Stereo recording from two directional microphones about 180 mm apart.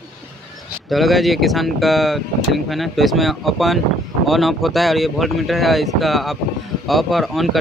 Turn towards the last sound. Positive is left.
turn(degrees=0)  # may be behind; listen again after turning